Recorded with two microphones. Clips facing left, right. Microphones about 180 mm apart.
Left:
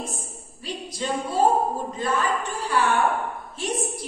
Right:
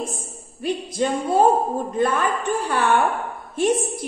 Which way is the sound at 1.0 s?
55° right (ahead or behind).